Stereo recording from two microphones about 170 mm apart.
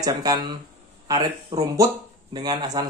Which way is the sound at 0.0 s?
20° right (ahead or behind).